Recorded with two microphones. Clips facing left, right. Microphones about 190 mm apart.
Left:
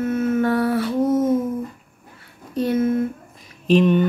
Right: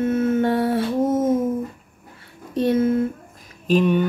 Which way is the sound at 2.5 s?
25° right (ahead or behind).